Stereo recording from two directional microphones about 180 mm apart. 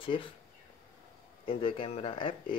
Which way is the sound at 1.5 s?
30° left (ahead or behind).